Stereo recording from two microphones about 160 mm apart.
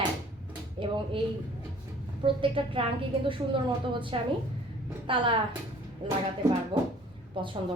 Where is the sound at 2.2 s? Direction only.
30° right (ahead or behind).